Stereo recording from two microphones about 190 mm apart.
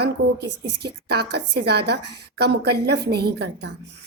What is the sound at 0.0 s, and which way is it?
A woman's voice, 60° right (ahead or behind).